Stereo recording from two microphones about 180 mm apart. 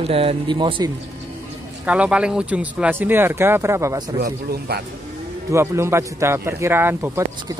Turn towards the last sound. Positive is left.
turn(degrees=-15)  # may be behind; listen again after turning